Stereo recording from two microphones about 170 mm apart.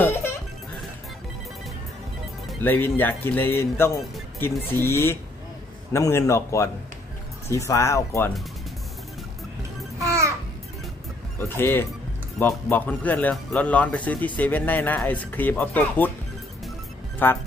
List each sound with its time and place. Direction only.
0.0 s music: 15° left (ahead or behind)
2.6 s speech: 10° left (ahead or behind)
9.9 s babbling: 15° right (ahead or behind)
11.3 s speech: 15° left (ahead or behind)
17.2 s speech: 10° left (ahead or behind)